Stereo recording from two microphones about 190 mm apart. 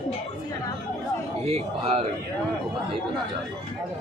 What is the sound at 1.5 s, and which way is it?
Speech, 30° right (ahead or behind).